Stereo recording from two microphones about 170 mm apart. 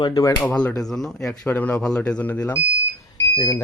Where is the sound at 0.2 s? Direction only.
20° left (ahead or behind).